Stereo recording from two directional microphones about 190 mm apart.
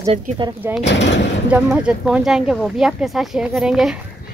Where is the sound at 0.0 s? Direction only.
30° right (ahead or behind).